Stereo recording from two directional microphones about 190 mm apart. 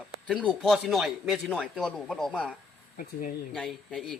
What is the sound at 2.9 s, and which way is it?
Speech, 45° left (ahead or behind).